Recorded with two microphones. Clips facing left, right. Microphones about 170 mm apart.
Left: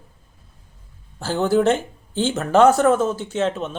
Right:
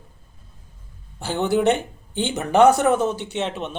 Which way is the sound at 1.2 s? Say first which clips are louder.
Left 2 dB; 20° right (ahead or behind).